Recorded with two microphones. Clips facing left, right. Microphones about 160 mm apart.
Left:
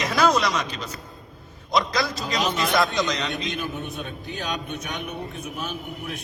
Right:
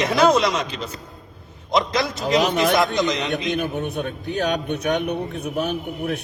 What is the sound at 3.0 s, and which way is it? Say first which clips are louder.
Speech: right 4 dB; 20° right (ahead or behind).